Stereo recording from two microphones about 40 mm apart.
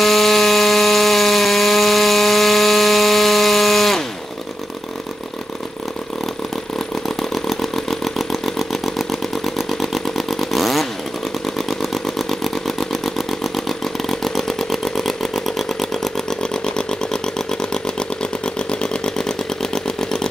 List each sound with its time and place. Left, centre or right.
0.0 s a sound: centre
7.2 s engine: centre
9.6 s chainsaw: centre
11.5 s motorcycle: centre
16.6 s vehicle: centre